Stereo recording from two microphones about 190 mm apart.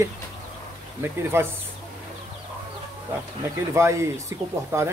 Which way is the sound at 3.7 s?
15° right (ahead or behind).